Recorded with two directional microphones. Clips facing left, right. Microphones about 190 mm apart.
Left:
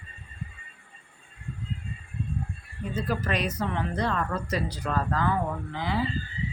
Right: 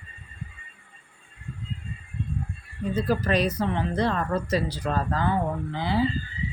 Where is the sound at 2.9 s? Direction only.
35° right (ahead or behind).